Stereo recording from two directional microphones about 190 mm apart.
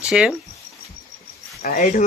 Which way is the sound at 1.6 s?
45° left (ahead or behind).